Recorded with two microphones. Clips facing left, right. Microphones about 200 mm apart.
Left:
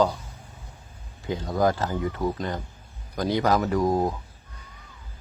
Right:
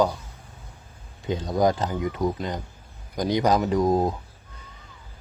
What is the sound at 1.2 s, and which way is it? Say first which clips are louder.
Speech: right 1 dB; 20° right (ahead or behind).